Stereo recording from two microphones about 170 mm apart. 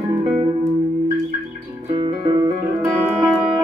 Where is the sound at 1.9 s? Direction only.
30° right (ahead or behind).